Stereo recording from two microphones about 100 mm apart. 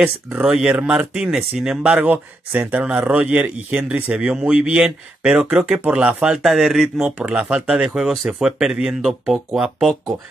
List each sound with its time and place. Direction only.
0.0 s speech: 10° right (ahead or behind)